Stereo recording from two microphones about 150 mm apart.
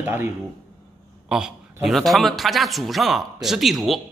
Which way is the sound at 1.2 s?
5° right (ahead or behind).